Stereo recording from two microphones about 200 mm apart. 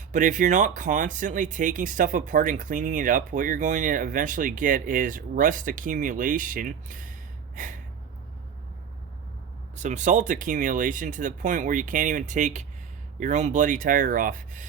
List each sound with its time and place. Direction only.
0.1 s speech: 40° right (ahead or behind)
7.5 s gasp: 40° right (ahead or behind)
9.7 s speech: 35° right (ahead or behind)